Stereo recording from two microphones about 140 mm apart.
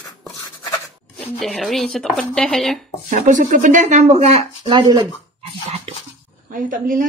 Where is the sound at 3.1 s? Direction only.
65° right (ahead or behind).